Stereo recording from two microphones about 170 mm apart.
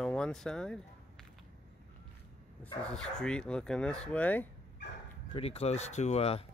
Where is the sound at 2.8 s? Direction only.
5° left (ahead or behind).